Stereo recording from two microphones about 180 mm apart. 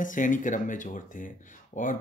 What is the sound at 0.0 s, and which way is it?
Speech, 45° left (ahead or behind).